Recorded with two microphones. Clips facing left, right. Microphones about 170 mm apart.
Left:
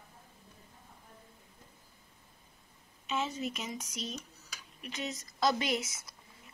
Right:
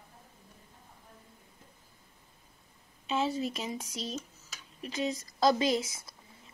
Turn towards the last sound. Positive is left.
turn(degrees=-30)  # may be behind; listen again after turning